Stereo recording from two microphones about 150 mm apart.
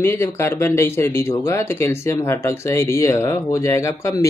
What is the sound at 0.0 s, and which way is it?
Speech, 15° left (ahead or behind).